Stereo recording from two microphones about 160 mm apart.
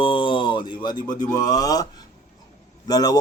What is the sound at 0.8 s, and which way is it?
A man's voice, 25° left (ahead or behind).